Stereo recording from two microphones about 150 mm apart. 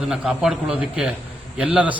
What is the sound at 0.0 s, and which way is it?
A man's voice, 5° right (ahead or behind).